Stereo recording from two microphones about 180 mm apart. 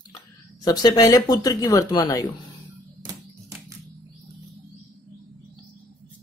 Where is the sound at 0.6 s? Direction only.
25° left (ahead or behind).